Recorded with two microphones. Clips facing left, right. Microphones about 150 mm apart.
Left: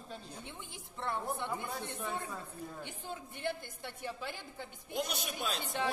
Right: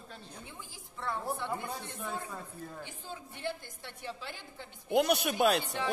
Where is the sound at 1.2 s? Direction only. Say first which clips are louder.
Right 2 dB; 10° right (ahead or behind).